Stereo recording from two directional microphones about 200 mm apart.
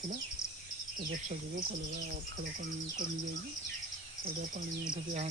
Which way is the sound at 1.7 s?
45° right (ahead or behind).